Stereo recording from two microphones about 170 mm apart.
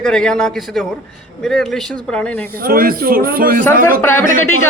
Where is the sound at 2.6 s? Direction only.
60° right (ahead or behind).